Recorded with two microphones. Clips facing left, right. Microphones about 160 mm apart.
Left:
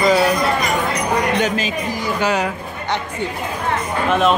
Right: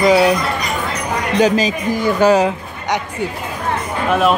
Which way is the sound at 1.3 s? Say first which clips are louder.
Right 5 dB; 35° right (ahead or behind).